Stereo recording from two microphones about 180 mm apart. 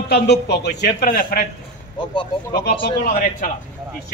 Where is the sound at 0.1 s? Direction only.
65° left (ahead or behind); by 1.5 s 50° left (ahead or behind).